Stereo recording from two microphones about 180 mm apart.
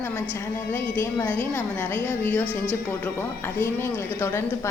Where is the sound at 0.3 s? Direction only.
10° left (ahead or behind).